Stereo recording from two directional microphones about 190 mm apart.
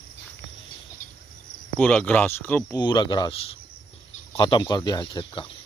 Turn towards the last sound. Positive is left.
turn(degrees=25)  # may be behind; listen again after turning